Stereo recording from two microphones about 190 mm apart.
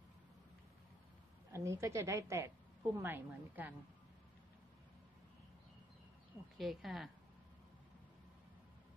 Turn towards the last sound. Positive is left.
turn(degrees=0)  # may be behind; listen again after turning